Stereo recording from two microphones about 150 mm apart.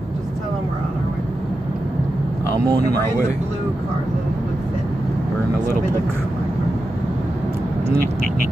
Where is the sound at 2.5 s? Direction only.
25° right (ahead or behind).